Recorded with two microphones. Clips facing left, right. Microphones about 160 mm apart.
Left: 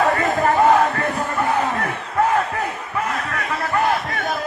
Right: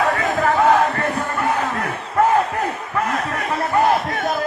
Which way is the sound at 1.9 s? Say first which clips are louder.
Right 2 dB; 35° right (ahead or behind).